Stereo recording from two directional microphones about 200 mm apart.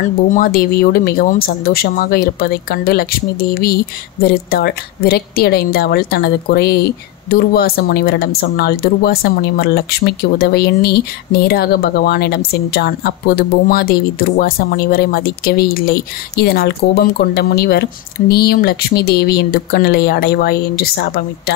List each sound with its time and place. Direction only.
0.4 s speech: 50° left (ahead or behind)